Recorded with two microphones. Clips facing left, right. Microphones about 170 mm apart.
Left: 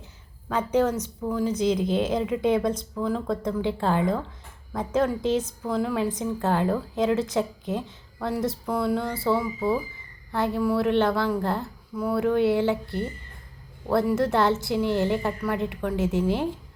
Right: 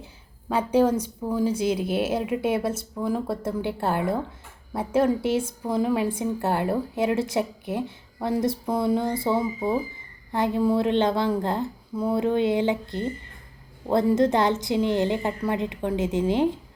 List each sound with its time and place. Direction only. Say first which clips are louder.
0.0 s a woman's voice: right 4 dB; 10° right (ahead or behind)